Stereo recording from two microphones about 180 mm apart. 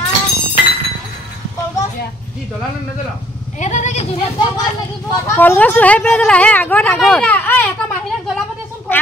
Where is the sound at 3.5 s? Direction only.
40° left (ahead or behind).